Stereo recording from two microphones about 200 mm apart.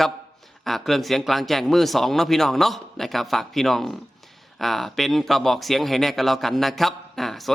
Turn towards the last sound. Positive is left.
turn(degrees=0)  # may be behind; listen again after turning